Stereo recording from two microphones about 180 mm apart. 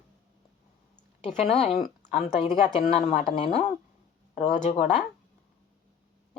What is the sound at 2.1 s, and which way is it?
Speech, 35° left (ahead or behind).